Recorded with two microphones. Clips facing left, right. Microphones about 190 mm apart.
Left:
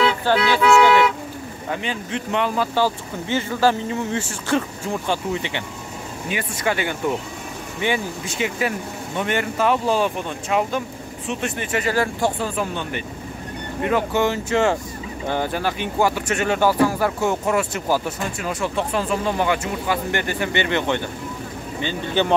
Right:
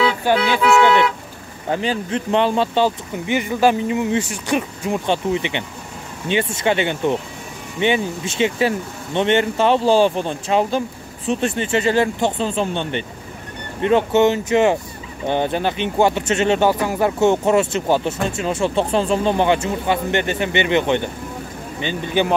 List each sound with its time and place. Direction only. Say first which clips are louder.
0.2 s speech: right 1 dB; 15° right (ahead or behind)
1.7 s speech: right 6 dB; 35° right (ahead or behind); by 22.3 s 15° right (ahead or behind)